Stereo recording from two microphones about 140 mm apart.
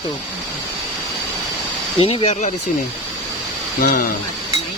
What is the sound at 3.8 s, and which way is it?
Speech, 80° left.